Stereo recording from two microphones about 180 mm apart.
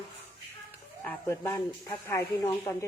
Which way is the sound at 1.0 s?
15° left (ahead or behind).